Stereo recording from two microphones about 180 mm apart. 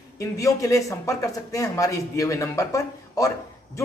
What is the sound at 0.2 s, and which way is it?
A man's voice, 20° left (ahead or behind).